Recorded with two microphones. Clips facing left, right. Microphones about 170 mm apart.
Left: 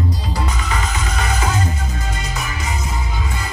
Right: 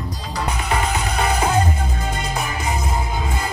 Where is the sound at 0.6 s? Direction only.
60° right (ahead or behind).